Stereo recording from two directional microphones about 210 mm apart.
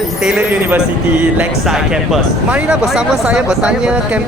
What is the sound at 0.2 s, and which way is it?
Speech, 5° right (ahead or behind).